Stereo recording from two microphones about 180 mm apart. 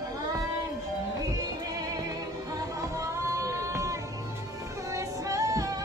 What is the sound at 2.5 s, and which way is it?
Music, 15° right (ahead or behind).